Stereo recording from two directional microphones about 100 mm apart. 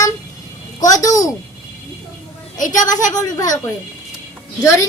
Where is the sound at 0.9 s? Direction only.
35° left (ahead or behind).